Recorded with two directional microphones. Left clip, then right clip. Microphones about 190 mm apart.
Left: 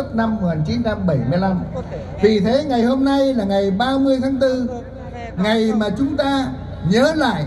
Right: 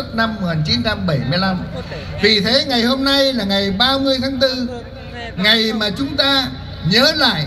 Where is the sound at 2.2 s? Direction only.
10° left (ahead or behind).